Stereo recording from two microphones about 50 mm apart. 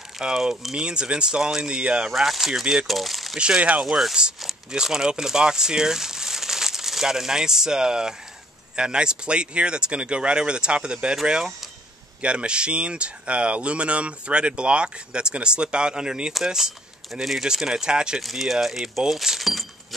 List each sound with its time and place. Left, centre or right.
0.2 s speech: centre
1.8 s speech: right
2.1 s speech: centre
2.6 s speech: centre
2.9 s speech: centre
3.3 s speech: centre
3.8 s speech: centre
18.2 s speech: centre